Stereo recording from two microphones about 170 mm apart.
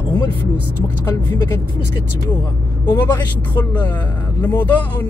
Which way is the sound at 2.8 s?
20° left (ahead or behind).